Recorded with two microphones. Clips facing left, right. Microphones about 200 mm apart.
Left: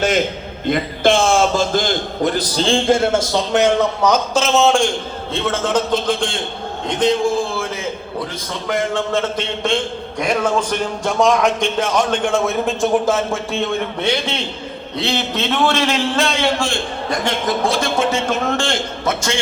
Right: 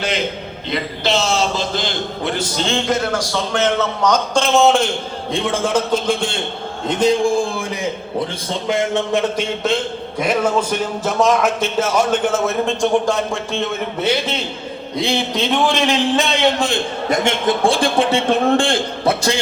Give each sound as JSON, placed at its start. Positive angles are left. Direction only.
{"t": 0.7, "sound": "a man's voice", "side_deg": 50}
{"t": 8.4, "sound": "a man's voice", "side_deg": -25}
{"t": 9.3, "sound": "a man's voice", "side_deg": -10}
{"t": 15.6, "sound": "a man's voice", "side_deg": -15}